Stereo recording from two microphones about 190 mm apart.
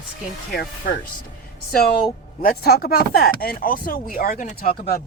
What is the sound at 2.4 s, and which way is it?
Speech, 50° left (ahead or behind).